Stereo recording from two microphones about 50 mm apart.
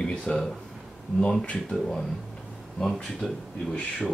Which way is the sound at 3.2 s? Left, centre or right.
Centre.